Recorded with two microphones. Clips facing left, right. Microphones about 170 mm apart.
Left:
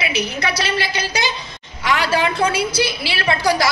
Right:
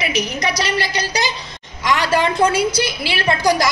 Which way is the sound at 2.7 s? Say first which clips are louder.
Even; 45° right (ahead or behind).